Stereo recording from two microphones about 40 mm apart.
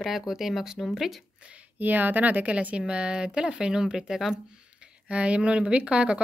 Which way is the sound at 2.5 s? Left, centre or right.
Right.